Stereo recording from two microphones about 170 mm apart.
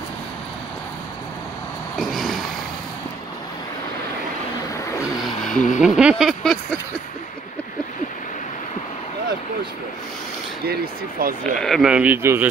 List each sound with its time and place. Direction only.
2.0 s vehicle: centre (ahead or behind)
5.0 s a sound: centre (ahead or behind)
10.6 s speech: 65° right (ahead or behind)
11.6 s speech: centre (ahead or behind)